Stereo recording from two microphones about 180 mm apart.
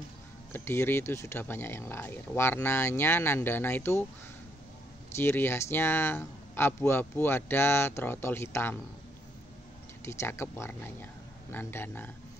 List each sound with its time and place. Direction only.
0.5 s speech: 15° left (ahead or behind)
5.1 s speech: 15° left (ahead or behind)
10.0 s speech: 15° left (ahead or behind)